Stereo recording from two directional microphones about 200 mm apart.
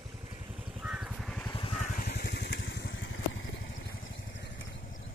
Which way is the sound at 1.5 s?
25° left (ahead or behind).